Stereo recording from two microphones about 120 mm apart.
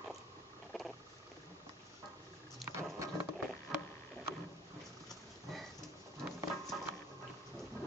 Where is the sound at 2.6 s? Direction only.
25° right (ahead or behind).